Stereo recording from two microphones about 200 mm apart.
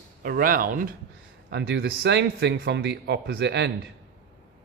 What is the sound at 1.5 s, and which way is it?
Speech, 60° right (ahead or behind).